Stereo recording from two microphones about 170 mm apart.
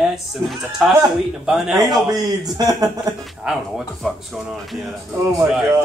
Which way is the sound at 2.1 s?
20° right (ahead or behind).